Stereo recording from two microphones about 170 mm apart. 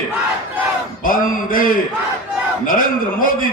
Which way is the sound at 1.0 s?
55° left (ahead or behind).